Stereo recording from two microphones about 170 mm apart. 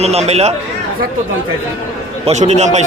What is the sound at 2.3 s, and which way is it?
Speech, 40° right (ahead or behind).